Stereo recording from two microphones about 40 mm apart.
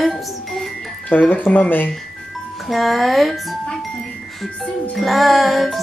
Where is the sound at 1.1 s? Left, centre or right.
Left.